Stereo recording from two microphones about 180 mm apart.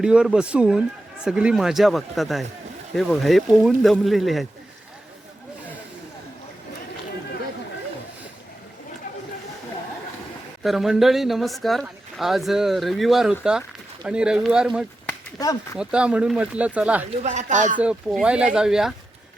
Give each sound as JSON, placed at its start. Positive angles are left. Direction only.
{"t": 0.0, "sound": "speech", "side_deg": -5}
{"t": 10.6, "sound": "speech", "side_deg": 0}
{"t": 15.4, "sound": "speech", "side_deg": 20}
{"t": 15.8, "sound": "speech", "side_deg": -5}
{"t": 17.1, "sound": "speech", "side_deg": -40}
{"t": 17.7, "sound": "speech", "side_deg": -5}